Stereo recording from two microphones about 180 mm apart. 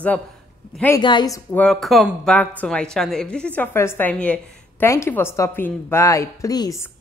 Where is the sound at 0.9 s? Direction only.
25° left (ahead or behind).